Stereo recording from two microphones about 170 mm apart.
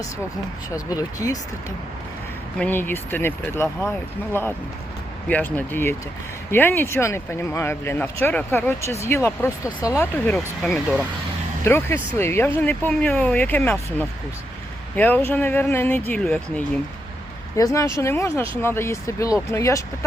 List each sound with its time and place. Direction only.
0.9 s speech: 20° left (ahead or behind)
2.6 s speech: 10° left (ahead or behind)
11.6 s speech: 15° left (ahead or behind)
17.6 s speech: 20° left (ahead or behind)